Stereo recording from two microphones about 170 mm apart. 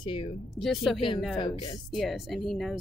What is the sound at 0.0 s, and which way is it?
Speech, 30° left (ahead or behind).